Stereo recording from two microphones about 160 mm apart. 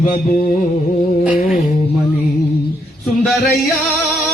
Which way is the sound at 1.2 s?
5° right (ahead or behind).